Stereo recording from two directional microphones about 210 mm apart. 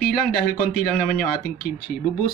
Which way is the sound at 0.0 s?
45° left (ahead or behind).